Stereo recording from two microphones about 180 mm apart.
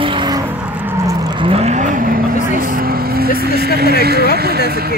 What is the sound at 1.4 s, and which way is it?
Vehicle, 35° right (ahead or behind).